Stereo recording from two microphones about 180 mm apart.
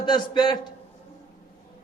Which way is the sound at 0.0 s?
25° left (ahead or behind).